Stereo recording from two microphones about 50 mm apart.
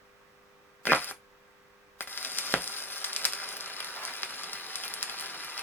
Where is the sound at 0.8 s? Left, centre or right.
Left.